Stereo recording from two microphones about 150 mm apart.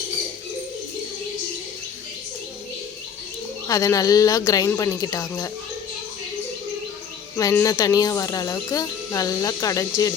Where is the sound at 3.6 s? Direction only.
20° left (ahead or behind).